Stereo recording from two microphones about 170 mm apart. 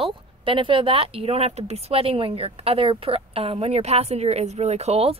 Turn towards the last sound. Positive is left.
turn(degrees=-35)  # may be behind; listen again after turning